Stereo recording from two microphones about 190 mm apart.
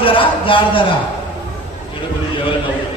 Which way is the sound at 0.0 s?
25° left (ahead or behind).